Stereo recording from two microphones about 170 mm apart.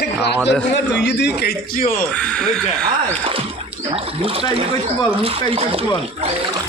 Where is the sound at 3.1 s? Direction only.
30° right (ahead or behind).